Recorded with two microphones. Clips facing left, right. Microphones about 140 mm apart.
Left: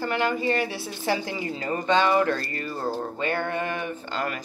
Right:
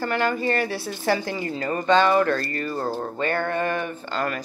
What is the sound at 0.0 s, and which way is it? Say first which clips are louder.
Speech: right 1 dB; 15° left (ahead or behind).